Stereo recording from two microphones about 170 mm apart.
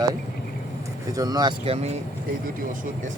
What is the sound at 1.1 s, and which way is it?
Speech, 20° right (ahead or behind).